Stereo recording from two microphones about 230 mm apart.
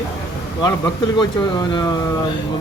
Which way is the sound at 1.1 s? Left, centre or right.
Centre.